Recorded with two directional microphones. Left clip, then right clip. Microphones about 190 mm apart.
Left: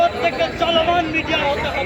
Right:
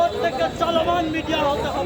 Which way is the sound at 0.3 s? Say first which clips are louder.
Left 3 dB; centre (ahead or behind).